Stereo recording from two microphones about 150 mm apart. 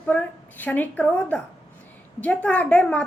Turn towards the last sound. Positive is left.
turn(degrees=10)  # may be behind; listen again after turning